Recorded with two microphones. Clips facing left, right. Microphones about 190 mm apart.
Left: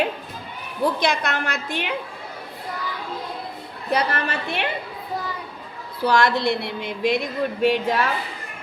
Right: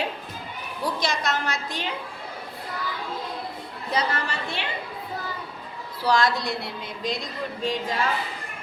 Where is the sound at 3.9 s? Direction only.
60° left (ahead or behind).